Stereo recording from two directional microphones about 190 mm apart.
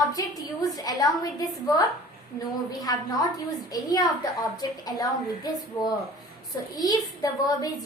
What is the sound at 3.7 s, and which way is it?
A woman's voice, 20° left (ahead or behind).